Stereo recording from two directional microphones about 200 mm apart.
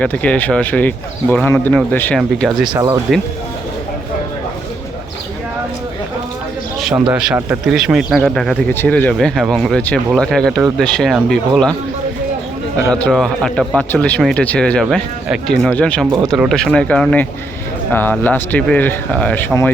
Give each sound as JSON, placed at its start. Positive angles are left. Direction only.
{"t": 0.0, "sound": "speech", "side_deg": 5}
{"t": 2.7, "sound": "speech", "side_deg": -15}
{"t": 7.1, "sound": "speech", "side_deg": -5}
{"t": 12.9, "sound": "speech", "side_deg": 0}